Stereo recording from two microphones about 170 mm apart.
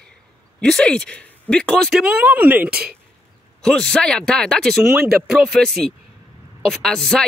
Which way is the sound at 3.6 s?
5° left (ahead or behind).